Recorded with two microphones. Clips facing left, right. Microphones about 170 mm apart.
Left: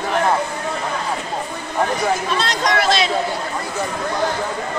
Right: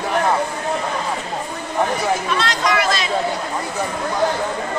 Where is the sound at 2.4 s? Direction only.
40° left (ahead or behind).